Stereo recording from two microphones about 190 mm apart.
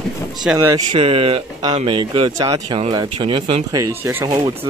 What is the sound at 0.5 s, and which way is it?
Speech, 20° right (ahead or behind).